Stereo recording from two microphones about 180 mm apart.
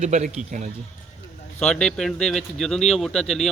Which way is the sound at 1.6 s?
5° left (ahead or behind).